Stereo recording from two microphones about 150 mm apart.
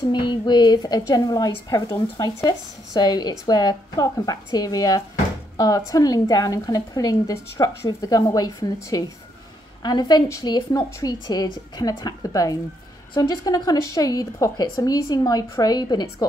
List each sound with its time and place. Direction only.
0.0 s a woman's voice: 30° left (ahead or behind)
9.8 s a woman's voice: 30° left (ahead or behind)